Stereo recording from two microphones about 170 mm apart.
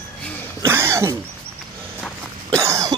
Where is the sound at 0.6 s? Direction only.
15° right (ahead or behind).